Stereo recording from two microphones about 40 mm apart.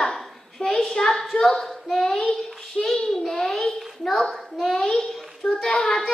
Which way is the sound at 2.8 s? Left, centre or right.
Centre.